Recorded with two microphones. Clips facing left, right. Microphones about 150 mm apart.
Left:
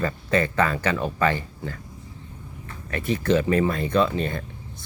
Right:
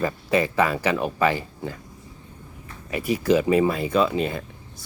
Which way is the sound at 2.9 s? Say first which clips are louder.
Right 1 dB; 10° right (ahead or behind).